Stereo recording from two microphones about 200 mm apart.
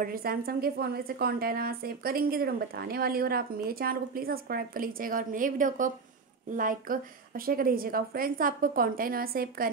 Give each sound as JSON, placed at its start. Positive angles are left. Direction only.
{"t": 0.0, "sound": "a woman's voice", "side_deg": -45}